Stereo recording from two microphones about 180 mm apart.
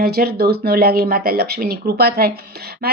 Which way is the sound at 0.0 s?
60° right (ahead or behind).